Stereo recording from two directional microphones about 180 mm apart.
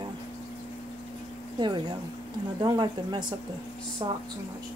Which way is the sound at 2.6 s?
25° right (ahead or behind).